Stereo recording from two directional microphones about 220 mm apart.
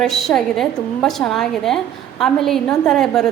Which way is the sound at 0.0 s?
Centre (ahead or behind).